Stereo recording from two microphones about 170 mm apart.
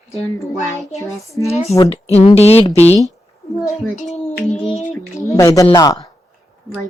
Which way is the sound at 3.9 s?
40° left (ahead or behind).